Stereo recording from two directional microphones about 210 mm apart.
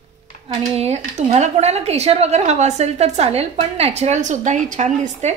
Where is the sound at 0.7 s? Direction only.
30° right (ahead or behind).